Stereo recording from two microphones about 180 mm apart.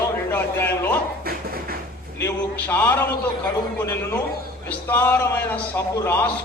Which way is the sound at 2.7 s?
10° left (ahead or behind).